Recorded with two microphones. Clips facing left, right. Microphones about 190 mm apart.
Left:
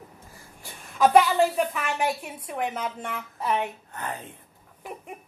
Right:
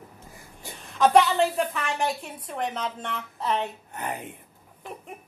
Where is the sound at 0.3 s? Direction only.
20° right (ahead or behind).